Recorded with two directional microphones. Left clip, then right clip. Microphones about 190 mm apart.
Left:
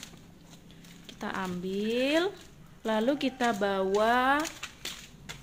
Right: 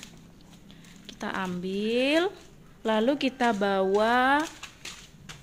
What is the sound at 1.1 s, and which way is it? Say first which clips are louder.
A woman's voice: right 3 dB; 20° right (ahead or behind).